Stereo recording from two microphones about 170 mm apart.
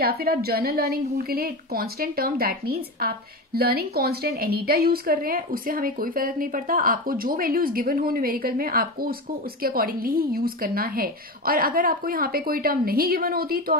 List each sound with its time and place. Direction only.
0.0 s a woman's voice: 65° right (ahead or behind)